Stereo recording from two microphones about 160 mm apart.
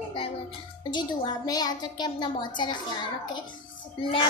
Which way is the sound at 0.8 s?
25° left (ahead or behind).